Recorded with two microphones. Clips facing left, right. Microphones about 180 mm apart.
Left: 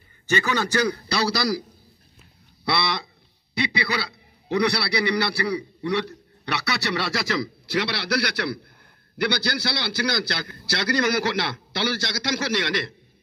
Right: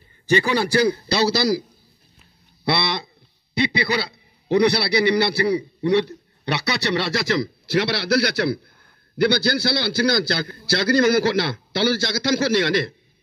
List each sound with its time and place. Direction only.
0.7 s a man's voice: 25° right (ahead or behind)
2.7 s a sound: 25° right (ahead or behind)
3.5 s a man's voice: 25° right (ahead or behind)